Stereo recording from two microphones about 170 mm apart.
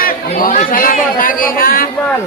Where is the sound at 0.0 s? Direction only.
55° left (ahead or behind).